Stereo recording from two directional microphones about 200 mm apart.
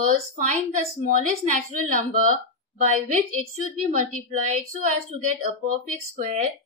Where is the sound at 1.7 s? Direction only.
40° right (ahead or behind).